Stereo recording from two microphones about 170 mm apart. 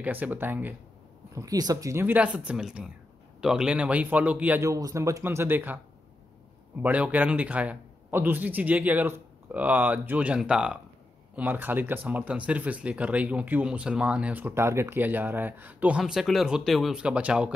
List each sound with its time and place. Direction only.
0.0 s speech: 10° right (ahead or behind)
6.8 s speech: 10° right (ahead or behind)